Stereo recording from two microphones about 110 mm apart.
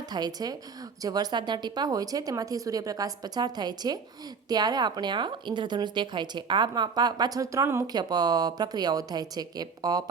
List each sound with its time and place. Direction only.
0.1 s a woman's voice: 40° right (ahead or behind)
7.9 s a woman's voice: 35° right (ahead or behind)